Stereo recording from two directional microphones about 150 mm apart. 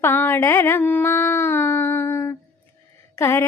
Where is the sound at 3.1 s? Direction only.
15° left (ahead or behind).